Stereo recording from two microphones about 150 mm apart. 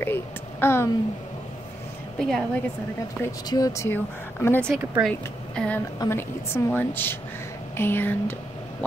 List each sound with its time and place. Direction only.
0.0 s a sound: 15° left (ahead or behind)
2.1 s a woman's voice: centre (ahead or behind)
3.2 s speech: 25° left (ahead or behind)
4.6 s speech: 15° right (ahead or behind)
5.0 s speech: 5° left (ahead or behind)
5.9 s a woman's voice: 15° left (ahead or behind)